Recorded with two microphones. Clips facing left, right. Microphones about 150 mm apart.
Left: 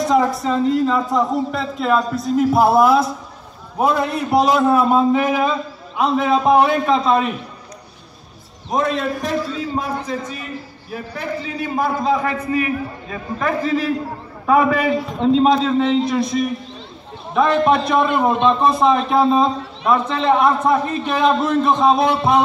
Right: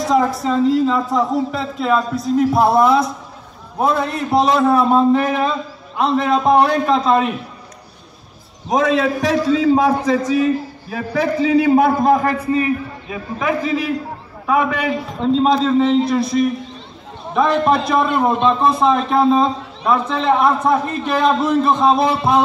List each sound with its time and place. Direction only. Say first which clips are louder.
0.0 s a man's voice: even; centre (ahead or behind)
9.2 s a man's voice: right 7 dB; 90° right; by 12.4 s 50° right (ahead or behind)
12.4 s a man's voice: right 2 dB; 30° right (ahead or behind)
13.1 s a man's voice: right 2 dB; 10° right (ahead or behind)